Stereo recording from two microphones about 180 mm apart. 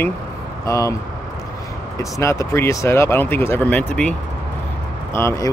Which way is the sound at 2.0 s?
15° left (ahead or behind).